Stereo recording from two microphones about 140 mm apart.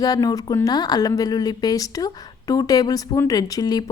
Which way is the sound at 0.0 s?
25° left (ahead or behind).